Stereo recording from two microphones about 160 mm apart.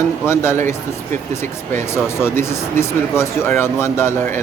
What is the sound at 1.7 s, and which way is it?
Speech, 15° left (ahead or behind).